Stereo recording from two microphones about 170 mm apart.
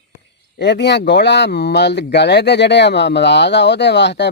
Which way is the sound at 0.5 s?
85° left.